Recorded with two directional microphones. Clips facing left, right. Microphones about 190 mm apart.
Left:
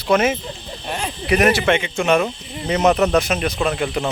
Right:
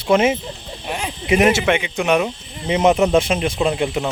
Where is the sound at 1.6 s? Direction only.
10° right (ahead or behind).